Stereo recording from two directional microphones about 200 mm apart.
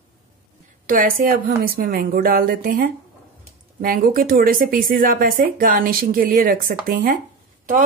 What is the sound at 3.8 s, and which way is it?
Speech, 45° right (ahead or behind).